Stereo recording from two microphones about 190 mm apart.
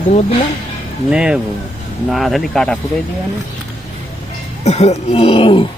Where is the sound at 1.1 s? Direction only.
5° right (ahead or behind).